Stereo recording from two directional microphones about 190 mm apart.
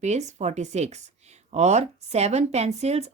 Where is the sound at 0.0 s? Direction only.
35° right (ahead or behind).